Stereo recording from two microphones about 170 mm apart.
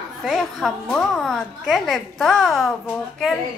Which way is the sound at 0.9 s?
5° left (ahead or behind).